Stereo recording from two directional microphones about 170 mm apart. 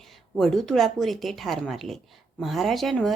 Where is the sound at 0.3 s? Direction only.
Centre (ahead or behind).